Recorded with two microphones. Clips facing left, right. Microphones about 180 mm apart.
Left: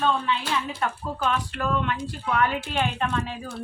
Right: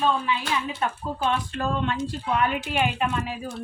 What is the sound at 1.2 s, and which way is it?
A woman's voice, 30° right (ahead or behind).